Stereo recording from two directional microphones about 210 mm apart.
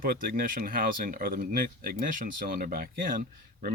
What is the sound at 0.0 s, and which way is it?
Speech, 45° right (ahead or behind).